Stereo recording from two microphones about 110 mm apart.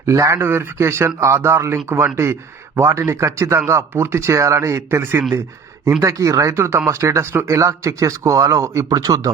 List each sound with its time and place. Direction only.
0.0 s speech: 25° right (ahead or behind)